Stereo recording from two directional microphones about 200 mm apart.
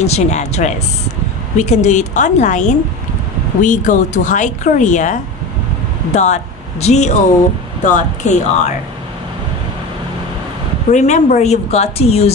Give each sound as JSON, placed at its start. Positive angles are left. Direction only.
{"t": 0.0, "sound": "speech", "side_deg": 35}
{"t": 10.9, "sound": "speech", "side_deg": 35}